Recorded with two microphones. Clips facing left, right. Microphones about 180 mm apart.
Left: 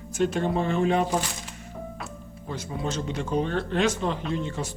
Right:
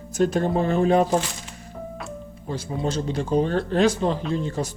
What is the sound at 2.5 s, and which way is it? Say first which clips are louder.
Speech: right 4 dB; 30° right (ahead or behind).